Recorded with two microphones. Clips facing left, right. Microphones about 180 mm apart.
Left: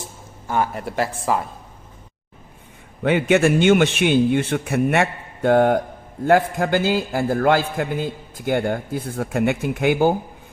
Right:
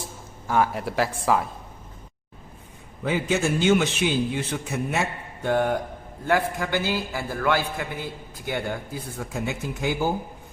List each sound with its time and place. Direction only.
0.4 s speech: centre (ahead or behind)
3.0 s a man's voice: 70° left (ahead or behind)